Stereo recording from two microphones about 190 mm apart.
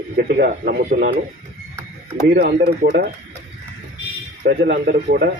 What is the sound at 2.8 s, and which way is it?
Speech, 50° right (ahead or behind).